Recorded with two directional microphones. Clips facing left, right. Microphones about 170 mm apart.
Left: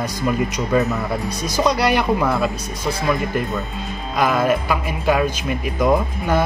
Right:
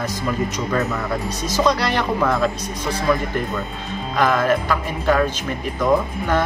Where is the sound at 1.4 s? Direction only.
10° left (ahead or behind).